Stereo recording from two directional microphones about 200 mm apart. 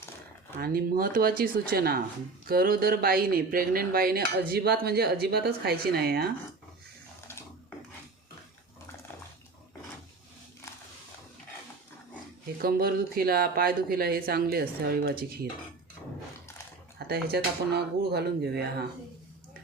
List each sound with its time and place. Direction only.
0.6 s dishes: 50° right (ahead or behind)
12.6 s dishes: 45° right (ahead or behind)
17.1 s dishes: 55° right (ahead or behind)